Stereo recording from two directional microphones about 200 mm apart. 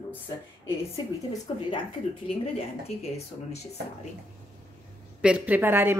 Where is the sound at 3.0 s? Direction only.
30° left (ahead or behind).